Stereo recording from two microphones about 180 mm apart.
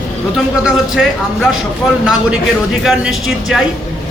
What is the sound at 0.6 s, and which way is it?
Speech, centre (ahead or behind).